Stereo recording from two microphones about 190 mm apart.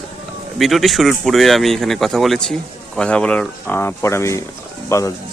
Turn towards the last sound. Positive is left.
turn(degrees=15)  # may be behind; listen again after turning